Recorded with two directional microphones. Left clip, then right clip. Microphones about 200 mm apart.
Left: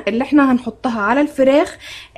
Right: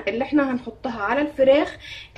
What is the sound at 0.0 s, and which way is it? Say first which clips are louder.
A woman's voice: left 7 dB; 50° left (ahead or behind).